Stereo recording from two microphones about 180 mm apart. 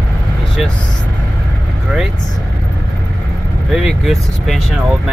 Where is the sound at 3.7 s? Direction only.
Centre (ahead or behind).